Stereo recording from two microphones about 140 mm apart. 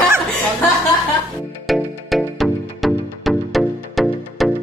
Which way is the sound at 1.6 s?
Centre (ahead or behind).